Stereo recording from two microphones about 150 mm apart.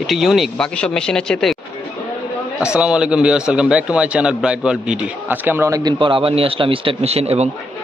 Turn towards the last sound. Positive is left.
turn(degrees=-45)  # may be behind; listen again after turning